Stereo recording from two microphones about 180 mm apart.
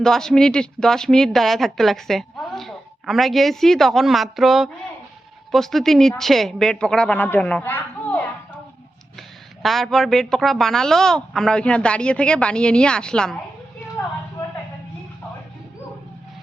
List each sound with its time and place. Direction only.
0.0 s speech: 5° left (ahead or behind)
9.6 s speech: centre (ahead or behind)